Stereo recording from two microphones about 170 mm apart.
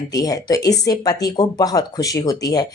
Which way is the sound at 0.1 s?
20° left (ahead or behind).